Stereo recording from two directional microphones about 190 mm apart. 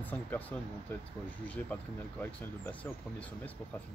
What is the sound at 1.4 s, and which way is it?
Speech, 10° left (ahead or behind).